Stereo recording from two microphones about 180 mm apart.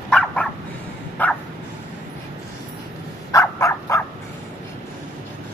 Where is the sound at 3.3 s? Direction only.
15° left (ahead or behind).